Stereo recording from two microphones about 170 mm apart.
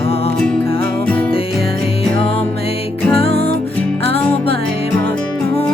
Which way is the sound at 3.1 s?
35° left (ahead or behind).